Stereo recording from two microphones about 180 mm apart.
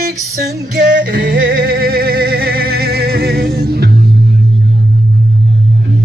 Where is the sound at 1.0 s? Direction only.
55° right (ahead or behind).